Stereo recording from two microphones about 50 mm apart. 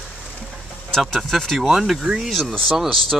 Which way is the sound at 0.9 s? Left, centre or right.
Centre.